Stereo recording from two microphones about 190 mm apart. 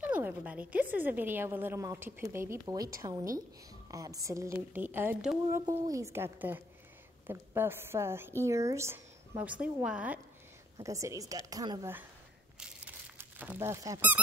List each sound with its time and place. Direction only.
0.0 s a woman's voice: 10° right (ahead or behind)
12.5 s squeak: 5° right (ahead or behind)